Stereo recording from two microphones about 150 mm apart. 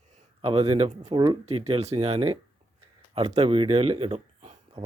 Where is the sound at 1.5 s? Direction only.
40° right (ahead or behind).